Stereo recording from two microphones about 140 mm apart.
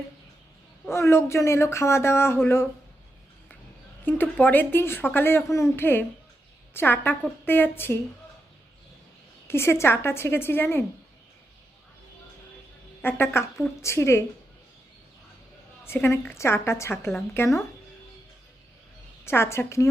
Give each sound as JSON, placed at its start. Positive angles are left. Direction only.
{"t": 0.9, "sound": "speech", "side_deg": 20}
{"t": 4.0, "sound": "a woman's voice", "side_deg": 15}
{"t": 9.5, "sound": "a woman's voice", "side_deg": 20}
{"t": 13.0, "sound": "a woman's voice", "side_deg": 15}
{"t": 15.8, "sound": "speech", "side_deg": 20}
{"t": 19.2, "sound": "speech", "side_deg": 20}